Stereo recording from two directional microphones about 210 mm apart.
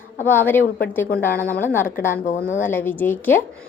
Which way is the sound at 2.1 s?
40° left (ahead or behind).